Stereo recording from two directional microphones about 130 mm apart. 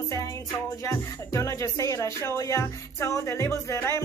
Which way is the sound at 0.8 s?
25° left (ahead or behind).